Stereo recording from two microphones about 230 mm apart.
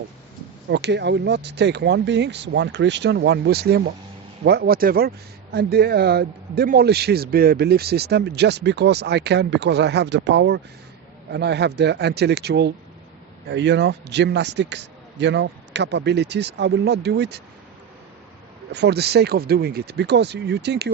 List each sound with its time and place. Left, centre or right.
0.7 s speech: right
18.7 s speech: right